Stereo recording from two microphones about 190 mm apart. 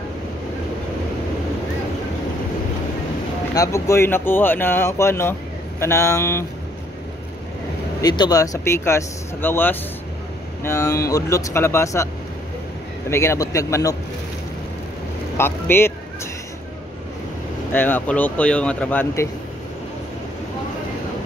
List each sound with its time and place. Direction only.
3.5 s speech: 15° left (ahead or behind)
8.0 s speech: 20° left (ahead or behind)
13.1 s speech: 15° left (ahead or behind)
15.3 s speech: 10° left (ahead or behind)
17.7 s speech: 10° left (ahead or behind)